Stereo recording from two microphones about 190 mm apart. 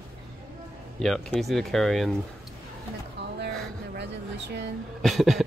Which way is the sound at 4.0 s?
60° right (ahead or behind).